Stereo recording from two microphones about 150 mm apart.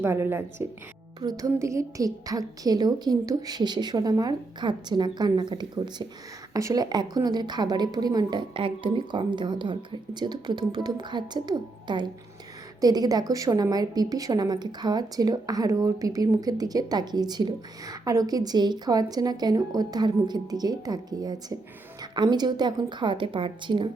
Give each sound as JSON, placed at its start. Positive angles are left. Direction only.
{"t": 0.0, "sound": "a woman's voice", "side_deg": -15}